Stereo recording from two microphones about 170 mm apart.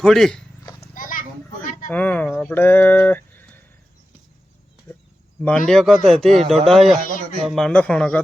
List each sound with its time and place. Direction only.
0.0 s speech: 5° left (ahead or behind)
0.9 s children playing: 55° left (ahead or behind)
1.9 s speech: 10° left (ahead or behind)
5.4 s speech: 5° left (ahead or behind)